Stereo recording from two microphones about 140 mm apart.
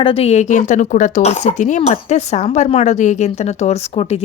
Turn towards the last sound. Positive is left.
turn(degrees=50)  # may be behind; listen again after turning